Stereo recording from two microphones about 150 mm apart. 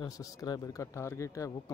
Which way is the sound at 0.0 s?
25° left (ahead or behind).